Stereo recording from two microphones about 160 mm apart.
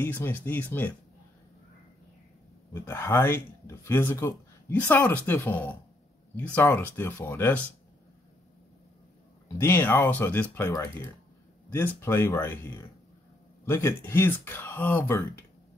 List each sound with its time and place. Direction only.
0.0 s speech: 15° left (ahead or behind)
2.7 s speech: 15° left (ahead or behind)
9.5 s speech: 15° left (ahead or behind)